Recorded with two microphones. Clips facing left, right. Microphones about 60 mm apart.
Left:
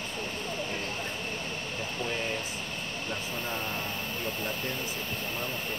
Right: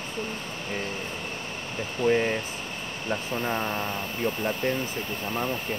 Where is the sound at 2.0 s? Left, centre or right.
Right.